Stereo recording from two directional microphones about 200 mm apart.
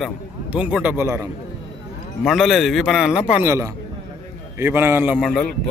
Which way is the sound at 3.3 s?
15° right (ahead or behind).